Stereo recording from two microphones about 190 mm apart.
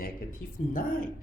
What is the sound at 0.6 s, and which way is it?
Speech, 45° left (ahead or behind).